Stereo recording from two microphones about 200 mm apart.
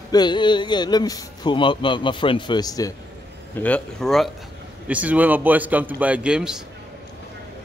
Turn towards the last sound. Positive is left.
turn(degrees=-5)  # may be behind; listen again after turning